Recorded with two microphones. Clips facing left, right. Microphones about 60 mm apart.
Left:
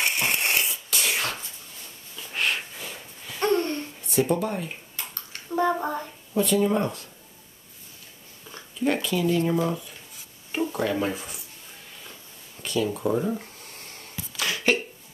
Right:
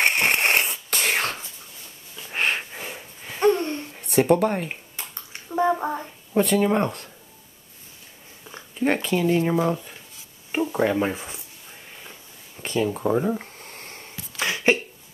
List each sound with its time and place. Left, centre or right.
0.0 s a sound: right
2.3 s wheeze: right
3.9 s speech: right
4.9 s bathtub: right
5.6 s speech: centre
6.3 s speech: right
8.7 s speech: right
12.0 s a sound: centre
12.6 s a sound: right